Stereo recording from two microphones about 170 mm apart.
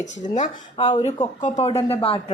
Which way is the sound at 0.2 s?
45° left (ahead or behind).